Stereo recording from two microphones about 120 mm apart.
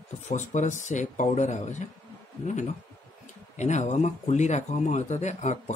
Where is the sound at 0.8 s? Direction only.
90° left.